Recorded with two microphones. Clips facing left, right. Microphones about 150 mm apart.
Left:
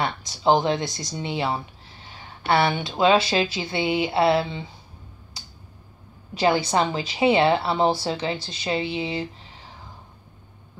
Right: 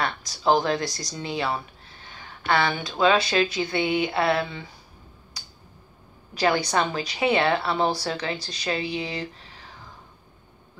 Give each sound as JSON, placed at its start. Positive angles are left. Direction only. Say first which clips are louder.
{"t": 0.0, "sound": "speech", "louder": "left 2 dB", "side_deg": 25}
{"t": 5.4, "sound": "tick-tock", "louder": "left 2 dB", "side_deg": 25}
{"t": 6.3, "sound": "speech", "louder": "left 2 dB", "side_deg": 25}